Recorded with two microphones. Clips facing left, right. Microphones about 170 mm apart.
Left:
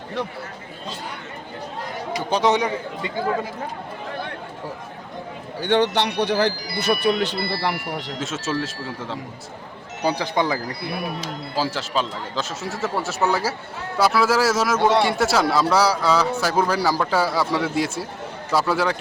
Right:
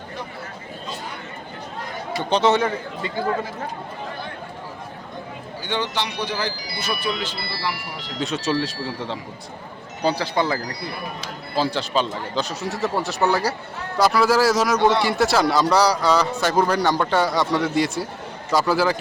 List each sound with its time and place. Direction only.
2.1 s a man's voice: 15° left (ahead or behind)
5.5 s speech: 65° left (ahead or behind)
8.2 s a man's voice: centre (ahead or behind)
10.0 s a man's voice: 15° left (ahead or behind)
11.5 s a man's voice: 5° left (ahead or behind)